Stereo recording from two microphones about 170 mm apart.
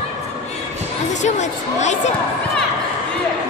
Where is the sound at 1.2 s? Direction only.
45° left (ahead or behind).